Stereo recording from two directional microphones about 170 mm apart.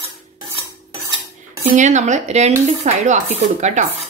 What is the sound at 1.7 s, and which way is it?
Speech, 45° right (ahead or behind).